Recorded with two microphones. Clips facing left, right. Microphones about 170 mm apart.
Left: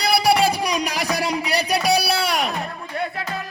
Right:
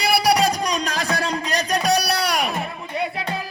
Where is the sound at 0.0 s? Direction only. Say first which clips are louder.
Left 1 dB; centre (ahead or behind).